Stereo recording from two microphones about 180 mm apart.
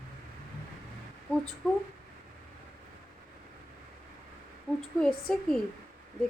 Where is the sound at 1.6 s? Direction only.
Centre (ahead or behind).